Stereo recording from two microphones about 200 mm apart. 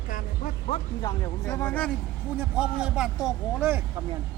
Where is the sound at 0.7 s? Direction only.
20° left (ahead or behind).